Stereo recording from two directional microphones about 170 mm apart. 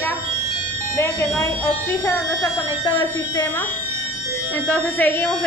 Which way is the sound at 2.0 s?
15° left (ahead or behind).